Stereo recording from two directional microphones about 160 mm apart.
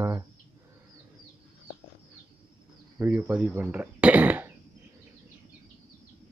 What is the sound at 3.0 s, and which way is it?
Speech, 10° right (ahead or behind).